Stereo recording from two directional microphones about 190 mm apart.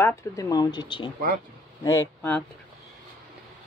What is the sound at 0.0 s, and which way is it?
Speech, 15° left (ahead or behind).